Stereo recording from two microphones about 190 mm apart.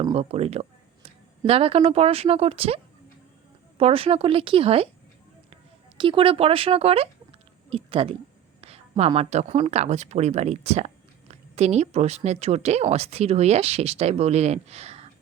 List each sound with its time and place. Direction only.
0.1 s a woman's voice: 35° right (ahead or behind)
6.0 s speech: 25° right (ahead or behind)